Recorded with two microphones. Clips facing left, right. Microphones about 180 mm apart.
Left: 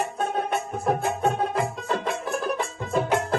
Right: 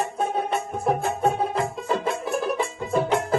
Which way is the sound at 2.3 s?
Centre (ahead or behind).